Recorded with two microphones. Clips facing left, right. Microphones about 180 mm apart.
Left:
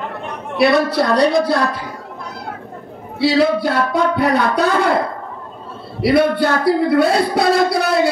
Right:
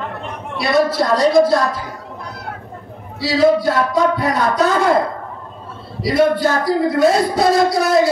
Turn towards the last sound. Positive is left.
turn(degrees=65)  # may be behind; listen again after turning